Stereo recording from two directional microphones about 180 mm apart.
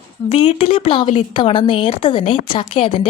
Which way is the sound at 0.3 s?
35° left (ahead or behind).